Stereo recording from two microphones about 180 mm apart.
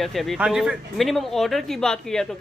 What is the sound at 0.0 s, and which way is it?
Speech, centre (ahead or behind).